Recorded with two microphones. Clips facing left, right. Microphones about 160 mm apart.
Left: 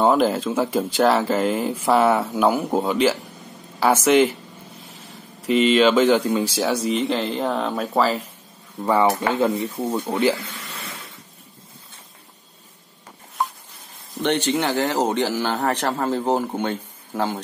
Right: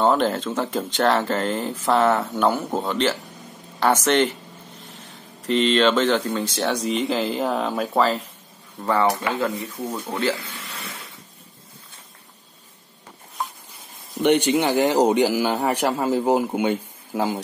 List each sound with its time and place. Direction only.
0.0 s speech: 5° left (ahead or behind)
5.5 s speech: 5° left (ahead or behind)
9.0 s speech: 25° left (ahead or behind)
14.2 s speech: 15° right (ahead or behind)